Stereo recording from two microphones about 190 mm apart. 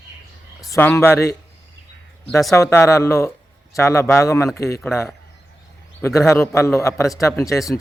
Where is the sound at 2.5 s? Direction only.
15° left (ahead or behind).